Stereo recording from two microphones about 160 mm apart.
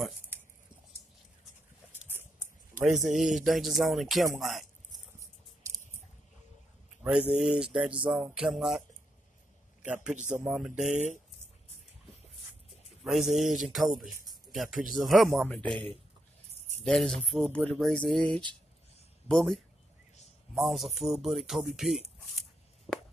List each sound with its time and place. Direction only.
1.9 s a sound: 15° right (ahead or behind)
2.7 s speech: centre (ahead or behind)
7.0 s a sound: 5° right (ahead or behind)
7.4 s speech: 5° right (ahead or behind)
10.1 s speech: 50° right (ahead or behind)
10.4 s speech: 5° right (ahead or behind)
10.9 s speech: 50° right (ahead or behind)
13.0 s speech: centre (ahead or behind)
16.8 s speech: 5° left (ahead or behind)